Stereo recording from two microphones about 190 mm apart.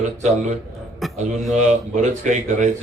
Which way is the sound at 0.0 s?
40° right (ahead or behind).